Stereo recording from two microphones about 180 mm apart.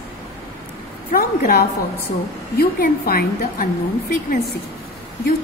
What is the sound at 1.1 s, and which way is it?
A woman's voice, 55° left (ahead or behind).